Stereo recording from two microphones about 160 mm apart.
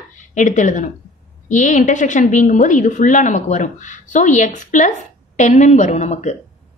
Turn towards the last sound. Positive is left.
turn(degrees=45)  # may be behind; listen again after turning